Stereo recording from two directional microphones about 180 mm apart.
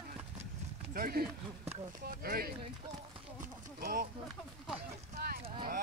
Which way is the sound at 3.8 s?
55° right (ahead or behind).